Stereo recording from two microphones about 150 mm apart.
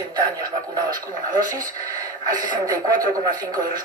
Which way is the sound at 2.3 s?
25° right (ahead or behind).